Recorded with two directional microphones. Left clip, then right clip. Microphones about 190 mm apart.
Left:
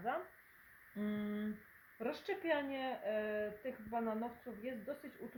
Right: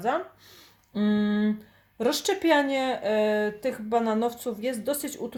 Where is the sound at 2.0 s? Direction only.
60° right (ahead or behind).